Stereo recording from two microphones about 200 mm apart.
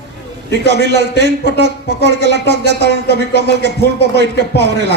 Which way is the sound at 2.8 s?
55° left (ahead or behind).